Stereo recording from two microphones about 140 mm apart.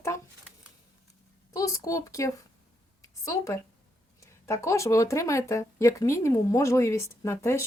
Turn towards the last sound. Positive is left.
turn(degrees=15)  # may be behind; listen again after turning